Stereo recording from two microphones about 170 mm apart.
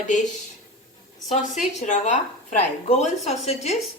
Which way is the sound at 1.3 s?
45° left (ahead or behind).